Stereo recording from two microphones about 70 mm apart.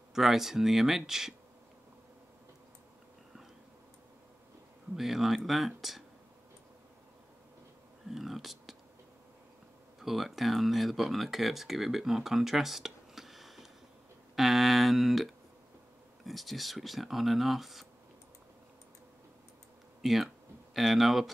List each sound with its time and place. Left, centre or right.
0.1 s speech: centre
4.9 s speech: centre
8.1 s speech: centre
9.9 s speech: centre
20.0 s speech: centre